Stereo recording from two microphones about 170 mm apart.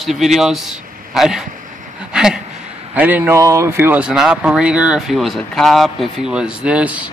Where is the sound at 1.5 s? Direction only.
50° right (ahead or behind).